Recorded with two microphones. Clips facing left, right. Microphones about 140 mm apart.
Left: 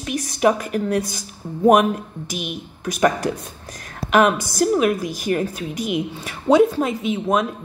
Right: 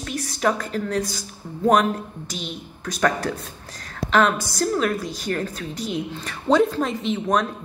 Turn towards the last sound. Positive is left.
turn(degrees=5)  # may be behind; listen again after turning